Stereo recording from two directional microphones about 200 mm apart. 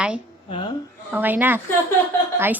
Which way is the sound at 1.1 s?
10° right (ahead or behind).